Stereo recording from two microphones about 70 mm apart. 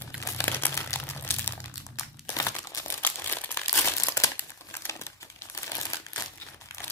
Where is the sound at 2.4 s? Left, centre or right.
Left.